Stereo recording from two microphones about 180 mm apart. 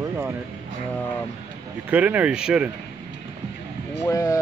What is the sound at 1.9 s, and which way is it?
Speech, 10° right (ahead or behind).